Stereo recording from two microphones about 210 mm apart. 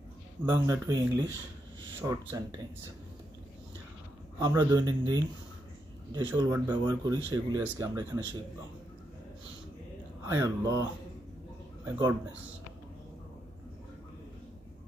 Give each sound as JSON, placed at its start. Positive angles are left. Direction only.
{"t": 0.5, "sound": "speech", "side_deg": -15}
{"t": 4.4, "sound": "speech", "side_deg": -15}
{"t": 6.3, "sound": "speech", "side_deg": -20}
{"t": 10.2, "sound": "speech", "side_deg": -15}
{"t": 11.8, "sound": "a man's voice", "side_deg": -10}